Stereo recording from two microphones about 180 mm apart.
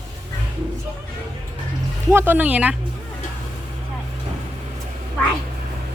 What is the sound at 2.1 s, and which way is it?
Speech, 10° right (ahead or behind).